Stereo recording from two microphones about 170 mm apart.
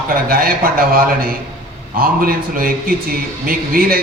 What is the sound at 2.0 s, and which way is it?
A man's voice, 55° right (ahead or behind).